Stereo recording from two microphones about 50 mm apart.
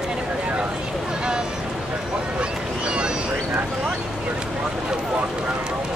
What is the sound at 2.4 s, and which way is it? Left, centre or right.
Boat, centre.